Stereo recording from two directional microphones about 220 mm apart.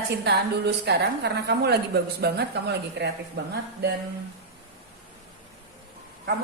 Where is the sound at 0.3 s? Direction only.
50° right (ahead or behind).